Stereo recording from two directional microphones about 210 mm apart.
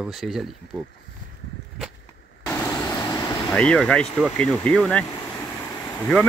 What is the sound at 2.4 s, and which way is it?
Vehicle, 10° left (ahead or behind).